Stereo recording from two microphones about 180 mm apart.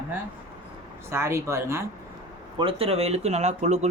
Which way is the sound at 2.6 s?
30° right (ahead or behind).